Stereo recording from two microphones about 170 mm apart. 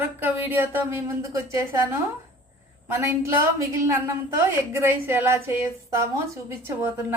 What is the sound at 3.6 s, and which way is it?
Speech, 15° right (ahead or behind).